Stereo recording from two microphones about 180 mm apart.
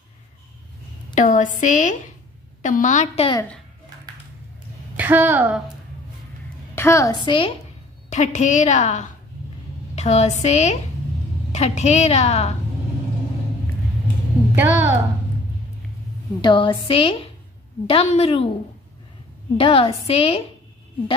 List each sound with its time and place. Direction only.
1.1 s a woman's voice: 45° left (ahead or behind)
4.9 s a woman's voice: 10° right (ahead or behind)
6.7 s a woman's voice: 15° left (ahead or behind)
8.1 s a woman's voice: 40° left (ahead or behind)
14.5 s a sound: 10° right (ahead or behind)
16.3 s a woman's voice: 25° left (ahead or behind)
19.5 s a woman's voice: 30° left (ahead or behind)